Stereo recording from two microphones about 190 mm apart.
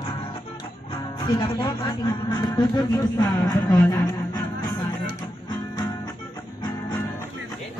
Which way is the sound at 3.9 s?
20° left (ahead or behind).